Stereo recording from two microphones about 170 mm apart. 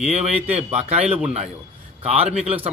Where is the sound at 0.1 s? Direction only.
40° right (ahead or behind).